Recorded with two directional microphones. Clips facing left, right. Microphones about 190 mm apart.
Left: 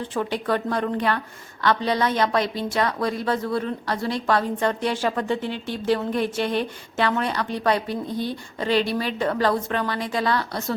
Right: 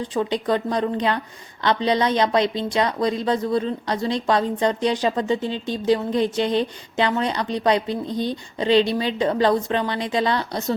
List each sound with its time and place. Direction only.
0.0 s a woman's voice: 15° right (ahead or behind)